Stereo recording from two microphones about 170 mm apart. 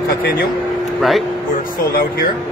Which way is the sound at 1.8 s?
60° left (ahead or behind).